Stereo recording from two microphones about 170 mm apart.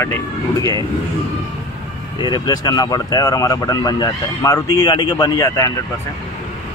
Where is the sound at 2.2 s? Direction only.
25° left (ahead or behind).